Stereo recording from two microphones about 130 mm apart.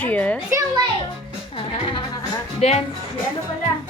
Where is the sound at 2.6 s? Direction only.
50° left (ahead or behind).